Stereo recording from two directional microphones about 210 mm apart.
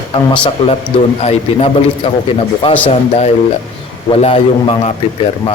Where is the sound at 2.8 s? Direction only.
30° left (ahead or behind).